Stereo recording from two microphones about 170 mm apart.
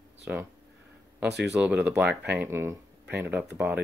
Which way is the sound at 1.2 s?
90° right.